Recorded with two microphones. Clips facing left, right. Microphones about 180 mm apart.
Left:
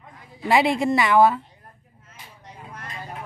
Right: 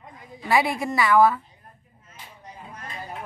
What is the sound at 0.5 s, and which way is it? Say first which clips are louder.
Speech: left 4 dB; 25° left (ahead or behind).